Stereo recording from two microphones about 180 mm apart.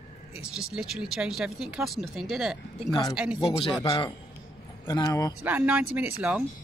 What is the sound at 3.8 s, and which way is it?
Speech, 20° left (ahead or behind).